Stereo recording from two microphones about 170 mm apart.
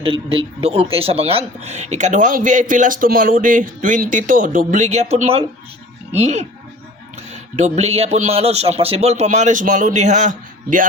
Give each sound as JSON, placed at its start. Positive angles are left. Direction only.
{"t": 0.0, "sound": "a man's voice", "side_deg": -30}
{"t": 7.5, "sound": "a man's voice", "side_deg": -40}